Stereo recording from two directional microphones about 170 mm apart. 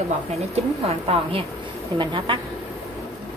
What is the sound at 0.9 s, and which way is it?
A woman's voice, 35° right (ahead or behind).